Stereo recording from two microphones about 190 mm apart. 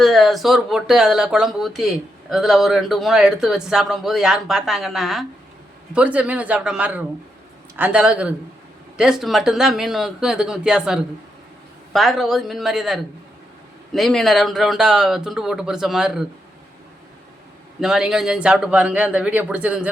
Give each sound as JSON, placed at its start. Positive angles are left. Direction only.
{"t": 0.0, "sound": "a man's voice", "side_deg": 0}
{"t": 17.7, "sound": "a man's voice", "side_deg": 0}